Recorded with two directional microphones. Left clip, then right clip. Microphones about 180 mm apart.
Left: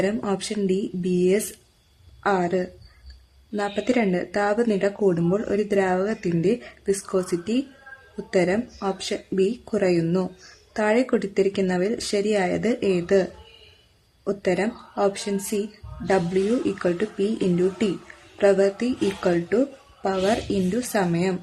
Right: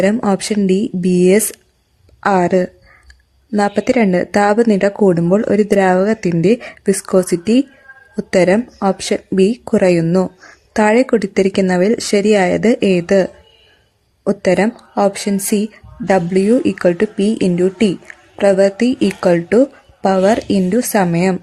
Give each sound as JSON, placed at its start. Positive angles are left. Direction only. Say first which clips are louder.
{"t": 0.0, "sound": "a woman's voice", "louder": "right 10 dB", "side_deg": -40}
{"t": 14.3, "sound": "speech", "louder": "right 10 dB", "side_deg": -40}